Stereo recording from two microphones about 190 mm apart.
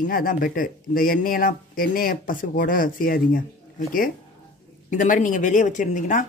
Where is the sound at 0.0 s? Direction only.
45° left (ahead or behind).